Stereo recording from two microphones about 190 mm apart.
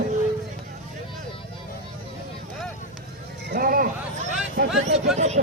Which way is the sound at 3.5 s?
50° right (ahead or behind).